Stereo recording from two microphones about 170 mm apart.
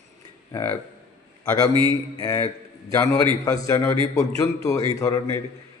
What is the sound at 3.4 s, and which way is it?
Speech, 20° left (ahead or behind).